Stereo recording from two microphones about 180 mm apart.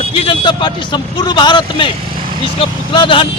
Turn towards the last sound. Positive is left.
turn(degrees=25)  # may be behind; listen again after turning